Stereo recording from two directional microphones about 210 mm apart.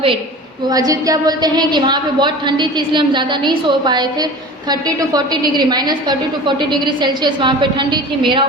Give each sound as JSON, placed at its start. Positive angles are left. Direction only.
{"t": 0.7, "sound": "a woman's voice", "side_deg": -15}